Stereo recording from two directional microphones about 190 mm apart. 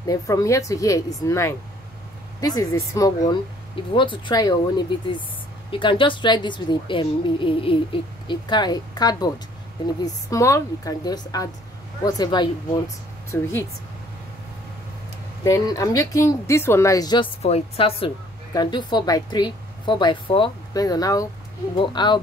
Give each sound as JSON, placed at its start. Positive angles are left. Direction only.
{"t": 0.0, "sound": "a woman's voice", "side_deg": 20}
{"t": 15.4, "sound": "speech", "side_deg": 20}